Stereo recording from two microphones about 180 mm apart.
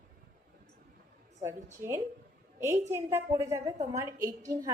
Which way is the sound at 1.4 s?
15° right (ahead or behind).